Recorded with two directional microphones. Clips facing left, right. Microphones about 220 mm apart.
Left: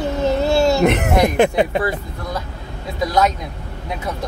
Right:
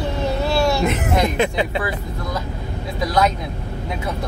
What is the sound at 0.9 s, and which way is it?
Speech, 60° left (ahead or behind).